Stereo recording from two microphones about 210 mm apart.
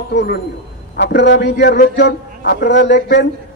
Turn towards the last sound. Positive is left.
turn(degrees=55)  # may be behind; listen again after turning